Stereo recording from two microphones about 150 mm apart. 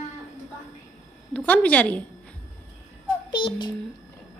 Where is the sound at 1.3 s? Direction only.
10° left (ahead or behind).